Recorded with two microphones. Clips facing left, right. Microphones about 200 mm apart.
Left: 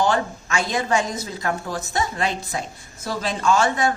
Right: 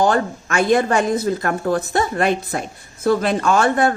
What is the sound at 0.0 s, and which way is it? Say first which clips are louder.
A woman's voice: right 4 dB; 55° right (ahead or behind).